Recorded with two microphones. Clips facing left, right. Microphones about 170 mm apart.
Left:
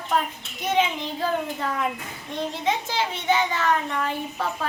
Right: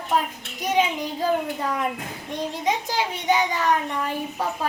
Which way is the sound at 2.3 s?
15° right (ahead or behind).